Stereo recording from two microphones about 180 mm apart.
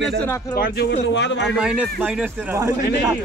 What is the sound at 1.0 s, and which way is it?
Speech, 75° left (ahead or behind).